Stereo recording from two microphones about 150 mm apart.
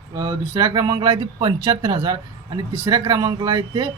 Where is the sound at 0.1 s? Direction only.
25° right (ahead or behind).